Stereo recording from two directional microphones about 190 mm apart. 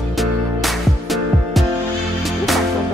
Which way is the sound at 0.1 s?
Centre (ahead or behind).